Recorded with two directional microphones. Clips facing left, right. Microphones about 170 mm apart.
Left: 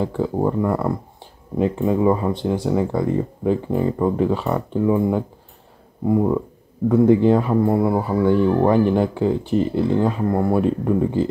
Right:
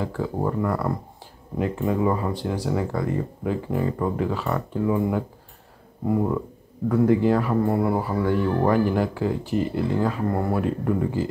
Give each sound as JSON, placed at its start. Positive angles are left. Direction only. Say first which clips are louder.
{"t": 0.0, "sound": "speech", "louder": "left 5 dB", "side_deg": 20}